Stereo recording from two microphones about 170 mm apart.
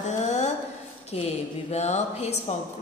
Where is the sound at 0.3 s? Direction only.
40° left (ahead or behind).